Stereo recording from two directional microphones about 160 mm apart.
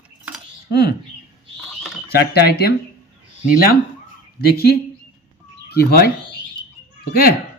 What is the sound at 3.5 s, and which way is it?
Speech, 65° left (ahead or behind).